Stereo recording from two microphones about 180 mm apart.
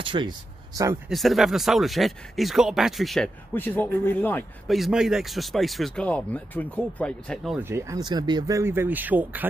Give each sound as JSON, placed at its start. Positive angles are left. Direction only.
{"t": 0.0, "sound": "a sound", "side_deg": -25}
{"t": 1.0, "sound": "speech", "side_deg": 0}
{"t": 3.5, "sound": "a man's voice", "side_deg": 10}
{"t": 4.6, "sound": "speech", "side_deg": 0}
{"t": 7.5, "sound": "speech", "side_deg": -15}